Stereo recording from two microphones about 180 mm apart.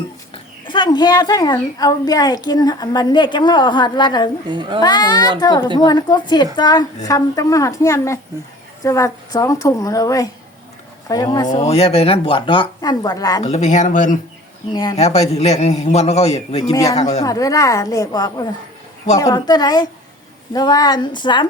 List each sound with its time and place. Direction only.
0.7 s a woman's voice: 25° left (ahead or behind)
4.4 s a child's voice: 25° right (ahead or behind)
4.8 s a woman's voice: 20° left (ahead or behind)
11.6 s a woman's voice: 35° left (ahead or behind)
13.4 s speech: 40° left (ahead or behind)
14.7 s a woman's voice: 25° left (ahead or behind)
15.0 s a man's voice: 35° left (ahead or behind)
17.2 s a woman's voice: 20° left (ahead or behind)